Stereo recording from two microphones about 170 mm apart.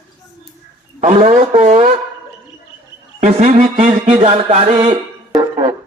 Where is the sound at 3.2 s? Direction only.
40° right (ahead or behind).